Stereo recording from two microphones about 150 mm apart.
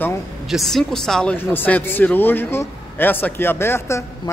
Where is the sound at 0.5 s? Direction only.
Centre (ahead or behind).